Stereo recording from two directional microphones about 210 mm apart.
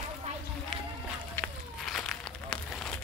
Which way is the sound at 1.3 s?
Centre (ahead or behind).